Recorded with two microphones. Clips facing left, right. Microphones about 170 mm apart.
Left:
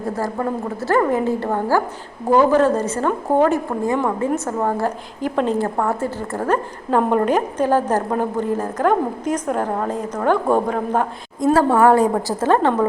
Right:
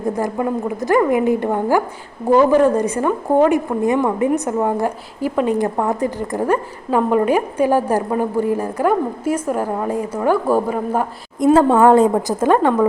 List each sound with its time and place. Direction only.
0.0 s a woman's voice: 15° right (ahead or behind)
11.3 s a woman's voice: 20° right (ahead or behind)